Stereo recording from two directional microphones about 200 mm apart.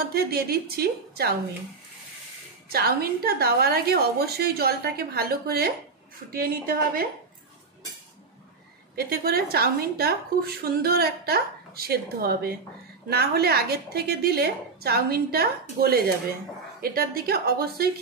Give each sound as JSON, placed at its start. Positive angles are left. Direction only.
{"t": 0.0, "sound": "a woman's voice", "side_deg": -50}
{"t": 2.7, "sound": "a woman's voice", "side_deg": -50}
{"t": 8.9, "sound": "a woman's voice", "side_deg": -50}